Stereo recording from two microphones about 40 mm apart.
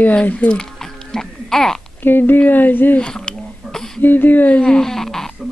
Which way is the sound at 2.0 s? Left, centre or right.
Left.